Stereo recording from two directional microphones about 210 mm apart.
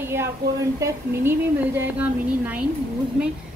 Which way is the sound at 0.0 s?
10° right (ahead or behind).